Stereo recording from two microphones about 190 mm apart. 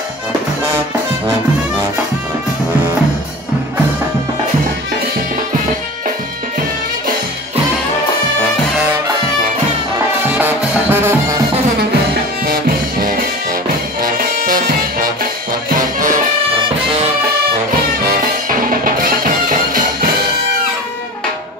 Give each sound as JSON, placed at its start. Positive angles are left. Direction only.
{"t": 10.3, "sound": "music", "side_deg": -10}
{"t": 14.0, "sound": "music", "side_deg": -50}
{"t": 18.5, "sound": "music", "side_deg": -50}